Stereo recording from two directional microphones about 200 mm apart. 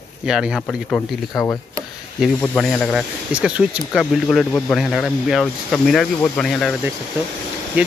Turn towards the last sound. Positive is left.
turn(degrees=-5)  # may be behind; listen again after turning